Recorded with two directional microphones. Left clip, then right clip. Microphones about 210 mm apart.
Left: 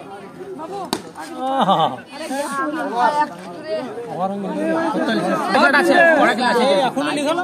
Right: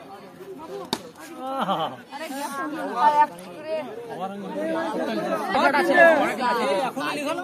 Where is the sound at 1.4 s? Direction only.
40° left (ahead or behind).